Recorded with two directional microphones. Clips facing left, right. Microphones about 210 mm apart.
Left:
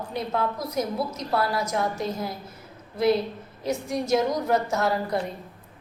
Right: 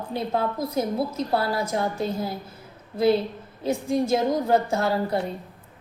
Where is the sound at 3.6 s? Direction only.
30° right (ahead or behind).